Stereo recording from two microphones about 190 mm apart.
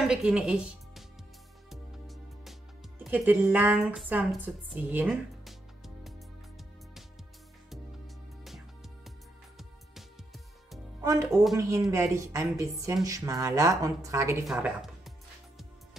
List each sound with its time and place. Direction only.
0.0 s speech: 5° right (ahead or behind)
1.7 s music: centre (ahead or behind)
3.0 s speech: 10° right (ahead or behind)
8.5 s music: centre (ahead or behind)
11.0 s music: 20° right (ahead or behind)
11.5 s speech: 15° right (ahead or behind)
14.4 s music: centre (ahead or behind)